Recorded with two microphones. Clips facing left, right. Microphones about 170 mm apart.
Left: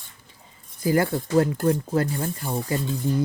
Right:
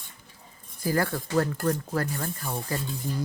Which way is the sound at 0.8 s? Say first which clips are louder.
Left 5 dB; 20° left (ahead or behind).